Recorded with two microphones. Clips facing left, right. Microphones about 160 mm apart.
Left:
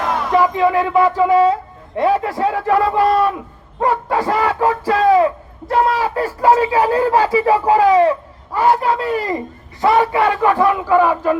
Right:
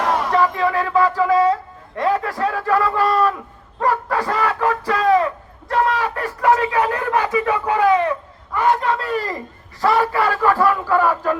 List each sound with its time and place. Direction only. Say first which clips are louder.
0.3 s speech: left 3 dB; 20° left (ahead or behind)